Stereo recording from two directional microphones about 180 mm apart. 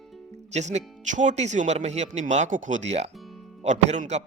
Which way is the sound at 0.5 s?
40° right (ahead or behind).